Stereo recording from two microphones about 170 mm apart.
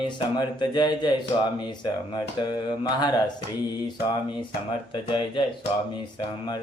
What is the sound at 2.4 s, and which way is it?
Speech, 25° left (ahead or behind).